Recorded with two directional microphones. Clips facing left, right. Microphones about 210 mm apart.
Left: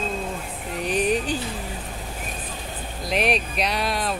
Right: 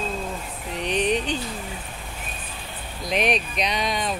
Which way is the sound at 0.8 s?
5° left (ahead or behind).